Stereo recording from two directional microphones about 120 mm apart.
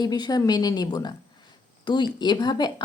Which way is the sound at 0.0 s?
35° left (ahead or behind).